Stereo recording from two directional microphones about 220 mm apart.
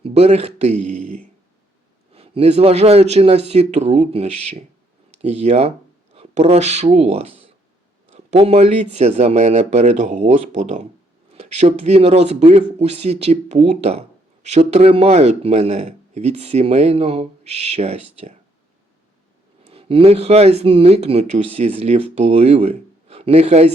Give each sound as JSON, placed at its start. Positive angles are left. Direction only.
{"t": 0.0, "sound": "speech", "side_deg": -30}
{"t": 19.6, "sound": "speech", "side_deg": -25}